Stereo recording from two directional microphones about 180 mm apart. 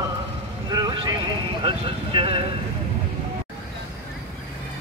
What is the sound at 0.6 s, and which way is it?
Vehicle, 20° right (ahead or behind).